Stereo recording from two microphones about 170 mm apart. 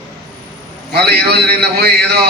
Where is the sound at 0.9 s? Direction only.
70° right (ahead or behind).